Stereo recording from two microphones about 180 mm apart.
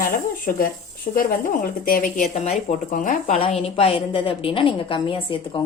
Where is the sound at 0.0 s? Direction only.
50° left (ahead or behind).